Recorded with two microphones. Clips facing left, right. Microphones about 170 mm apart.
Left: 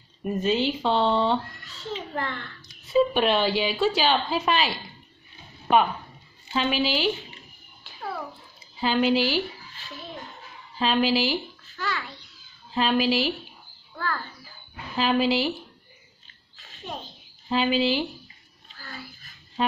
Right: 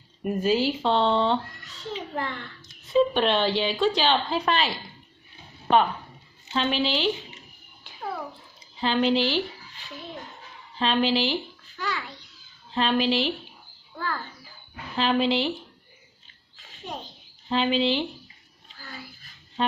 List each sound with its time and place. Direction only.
0.2 s speech: 10° right (ahead or behind)
1.8 s a child's voice: 15° right (ahead or behind)
2.9 s a woman's voice: 5° left (ahead or behind)
6.5 s a woman's voice: 5° left (ahead or behind)
8.7 s a woman's voice: 5° left (ahead or behind)
9.8 s a sound: 15° right (ahead or behind)
10.8 s speech: 5° left (ahead or behind)
11.7 s a child's voice: 15° right (ahead or behind)
12.7 s a woman's voice: 5° left (ahead or behind)
13.9 s a child's voice: 15° right (ahead or behind)
15.0 s a woman's voice: 5° left (ahead or behind)
16.5 s a sound: 15° right (ahead or behind)
17.5 s a woman's voice: 5° left (ahead or behind)